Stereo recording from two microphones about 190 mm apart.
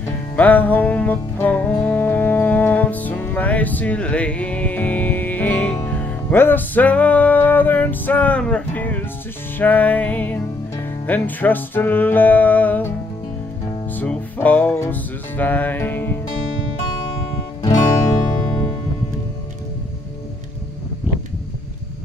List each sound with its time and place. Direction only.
0.4 s music: 10° left (ahead or behind)
13.9 s music: 10° left (ahead or behind)
17.6 s music: 20° left (ahead or behind)